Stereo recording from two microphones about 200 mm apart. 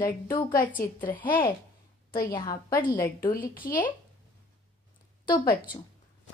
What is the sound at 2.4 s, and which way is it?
Speech, 15° left (ahead or behind).